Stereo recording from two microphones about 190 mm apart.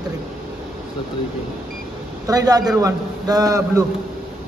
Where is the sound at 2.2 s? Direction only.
20° right (ahead or behind).